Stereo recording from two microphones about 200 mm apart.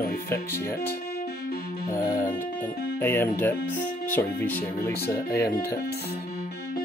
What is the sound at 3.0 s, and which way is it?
Speech, 10° left (ahead or behind).